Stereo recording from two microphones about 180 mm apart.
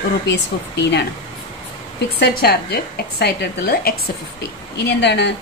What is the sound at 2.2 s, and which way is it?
A woman's voice, 65° left (ahead or behind).